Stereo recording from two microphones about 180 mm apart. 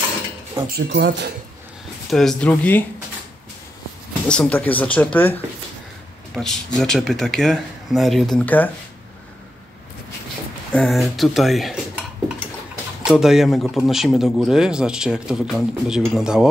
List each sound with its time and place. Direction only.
0.7 s speech: 60° right (ahead or behind)
2.0 s speech: centre (ahead or behind)
4.3 s speech: 5° left (ahead or behind)
10.7 s speech: centre (ahead or behind)
13.0 s speech: 5° right (ahead or behind)